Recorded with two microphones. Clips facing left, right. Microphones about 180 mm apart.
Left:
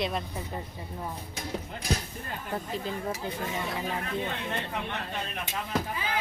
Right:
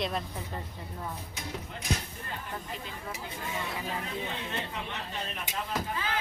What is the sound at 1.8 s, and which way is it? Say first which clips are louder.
Speech: left 2 dB; 35° left (ahead or behind).